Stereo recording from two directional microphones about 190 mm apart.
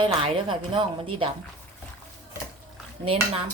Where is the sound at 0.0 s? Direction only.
30° right (ahead or behind).